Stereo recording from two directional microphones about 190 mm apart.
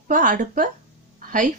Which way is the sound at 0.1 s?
45° right (ahead or behind).